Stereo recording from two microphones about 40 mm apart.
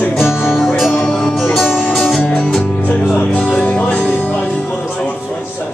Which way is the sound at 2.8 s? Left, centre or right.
Left.